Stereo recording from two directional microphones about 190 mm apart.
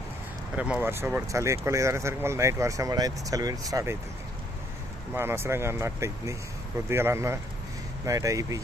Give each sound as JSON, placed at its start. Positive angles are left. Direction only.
{"t": 0.5, "sound": "speech", "side_deg": -5}
{"t": 5.1, "sound": "speech", "side_deg": -15}